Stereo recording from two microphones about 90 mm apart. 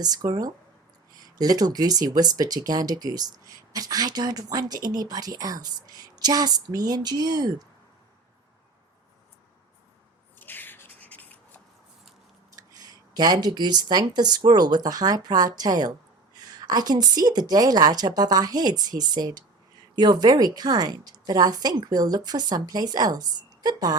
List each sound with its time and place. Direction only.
0.0 s speech: 45° right (ahead or behind)
10.4 s rub: 20° left (ahead or behind)
12.5 s speech: 45° right (ahead or behind)